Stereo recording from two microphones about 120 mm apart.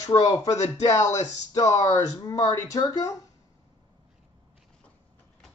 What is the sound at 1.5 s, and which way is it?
Speech, 30° left (ahead or behind).